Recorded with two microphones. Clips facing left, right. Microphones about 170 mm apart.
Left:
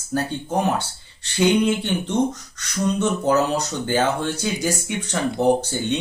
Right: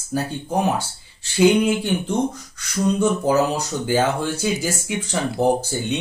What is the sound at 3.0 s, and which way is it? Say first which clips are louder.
Speech: right 1 dB; 10° right (ahead or behind).